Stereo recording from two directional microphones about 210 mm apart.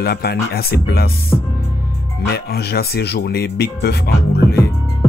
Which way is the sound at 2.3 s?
50° left (ahead or behind).